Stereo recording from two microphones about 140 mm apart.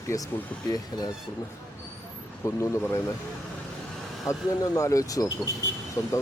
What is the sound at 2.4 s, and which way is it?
Speech, 20° left (ahead or behind).